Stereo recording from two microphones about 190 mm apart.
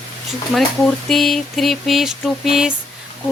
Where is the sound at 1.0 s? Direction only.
Centre (ahead or behind).